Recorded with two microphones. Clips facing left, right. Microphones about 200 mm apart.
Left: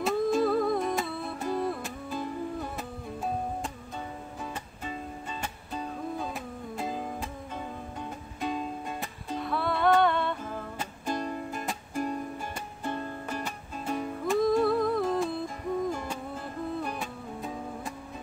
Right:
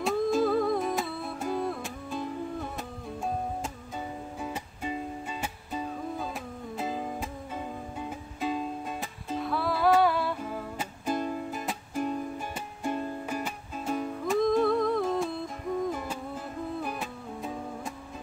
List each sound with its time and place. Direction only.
0.0 s music: centre (ahead or behind)
4.4 s music: 10° right (ahead or behind)
12.8 s music: 10° right (ahead or behind)